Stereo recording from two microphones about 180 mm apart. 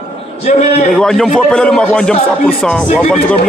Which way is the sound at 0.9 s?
Centre (ahead or behind).